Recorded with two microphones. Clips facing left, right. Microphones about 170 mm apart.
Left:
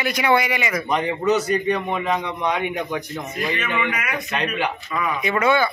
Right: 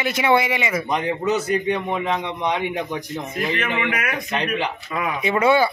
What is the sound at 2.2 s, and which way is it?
Speech, 25° right (ahead or behind).